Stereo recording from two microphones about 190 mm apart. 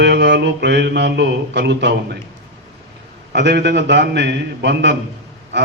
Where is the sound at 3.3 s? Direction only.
65° right (ahead or behind).